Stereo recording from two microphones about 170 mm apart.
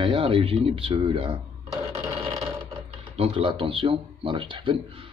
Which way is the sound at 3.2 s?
35° right (ahead or behind).